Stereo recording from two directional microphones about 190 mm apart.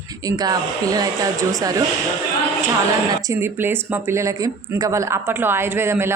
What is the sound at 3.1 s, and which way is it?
Speech, 15° right (ahead or behind).